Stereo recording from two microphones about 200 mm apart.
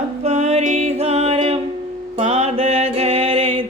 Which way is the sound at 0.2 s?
35° right (ahead or behind).